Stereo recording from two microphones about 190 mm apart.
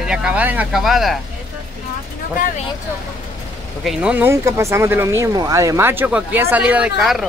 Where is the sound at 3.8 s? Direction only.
5° right (ahead or behind).